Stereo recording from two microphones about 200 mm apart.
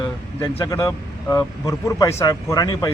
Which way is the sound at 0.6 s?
15° left (ahead or behind).